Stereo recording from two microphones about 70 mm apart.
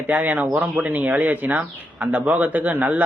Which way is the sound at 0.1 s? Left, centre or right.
Right.